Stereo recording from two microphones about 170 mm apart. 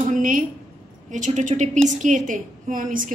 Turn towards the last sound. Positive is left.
turn(degrees=-50)  # may be behind; listen again after turning